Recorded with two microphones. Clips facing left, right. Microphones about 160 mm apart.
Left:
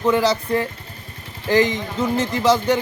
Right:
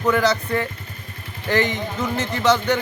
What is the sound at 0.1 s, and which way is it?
Speech, 30° left (ahead or behind).